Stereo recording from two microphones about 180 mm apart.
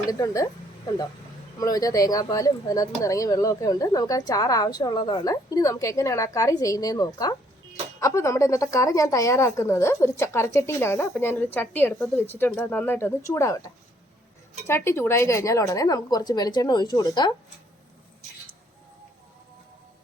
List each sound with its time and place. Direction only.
0.1 s a woman's voice: 20° left (ahead or behind)
1.5 s speech: 20° left (ahead or behind)
14.7 s a woman's voice: 15° left (ahead or behind)